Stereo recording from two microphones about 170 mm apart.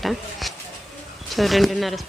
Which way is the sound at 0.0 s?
Centre (ahead or behind).